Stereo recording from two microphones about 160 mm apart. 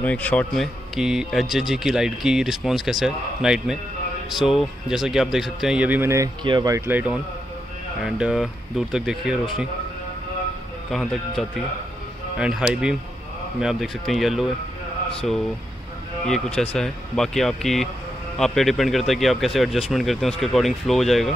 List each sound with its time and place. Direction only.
0.0 s speech: 10° left (ahead or behind); by 6.8 s 25° right (ahead or behind)
6.9 s speech: 10° right (ahead or behind)
10.9 s speech: centre (ahead or behind)
16.7 s speech: 5° left (ahead or behind)